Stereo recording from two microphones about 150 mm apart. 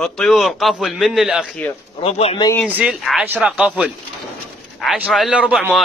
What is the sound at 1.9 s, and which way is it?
Speech, 40° left (ahead or behind).